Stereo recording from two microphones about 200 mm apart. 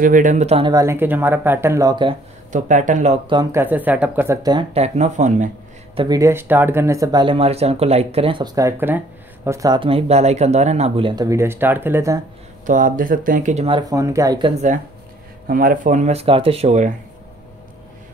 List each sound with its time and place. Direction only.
0.0 s speech: 40° right (ahead or behind); by 2.1 s 20° right (ahead or behind)
2.5 s speech: 40° right (ahead or behind)
3.3 s speech: 20° right (ahead or behind)
3.6 s speech: 10° right (ahead or behind)
4.7 s speech: 35° right (ahead or behind)
5.9 s speech: 20° right (ahead or behind)
12.6 s speech: 40° right (ahead or behind); by 14.5 s 20° right (ahead or behind)
15.4 s speech: 45° right (ahead or behind)